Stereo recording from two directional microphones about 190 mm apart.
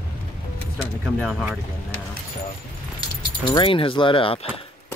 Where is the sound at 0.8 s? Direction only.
5° left (ahead or behind).